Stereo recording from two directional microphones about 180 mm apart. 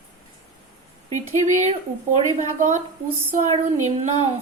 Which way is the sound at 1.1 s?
15° left (ahead or behind).